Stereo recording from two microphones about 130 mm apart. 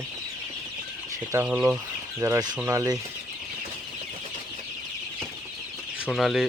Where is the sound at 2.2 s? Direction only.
30° right (ahead or behind).